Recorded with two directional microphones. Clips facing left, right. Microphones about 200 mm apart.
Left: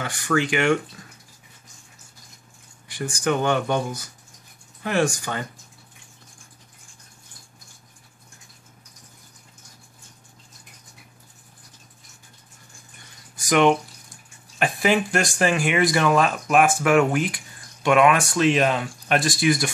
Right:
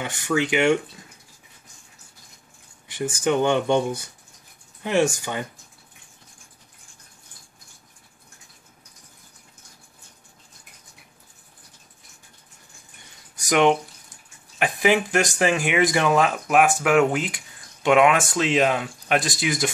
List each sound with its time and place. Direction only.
0.0 s speech: 20° right (ahead or behind)
2.9 s speech: 20° right (ahead or behind)
13.5 s speech: 15° right (ahead or behind)